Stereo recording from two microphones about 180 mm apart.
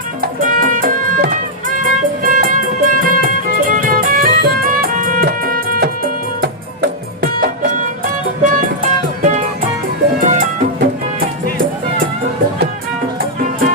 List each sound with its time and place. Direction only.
0.2 s music: 50° right (ahead or behind)
7.7 s music: 45° right (ahead or behind)